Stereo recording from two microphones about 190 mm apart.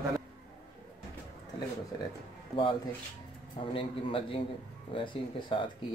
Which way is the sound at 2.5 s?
25° left (ahead or behind).